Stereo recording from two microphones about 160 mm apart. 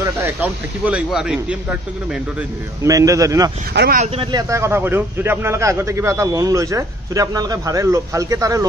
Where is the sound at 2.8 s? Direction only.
20° right (ahead or behind).